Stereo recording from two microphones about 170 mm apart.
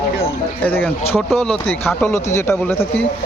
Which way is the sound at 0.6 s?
10° left (ahead or behind).